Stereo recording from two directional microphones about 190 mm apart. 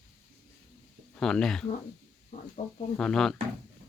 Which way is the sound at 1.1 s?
5° left (ahead or behind).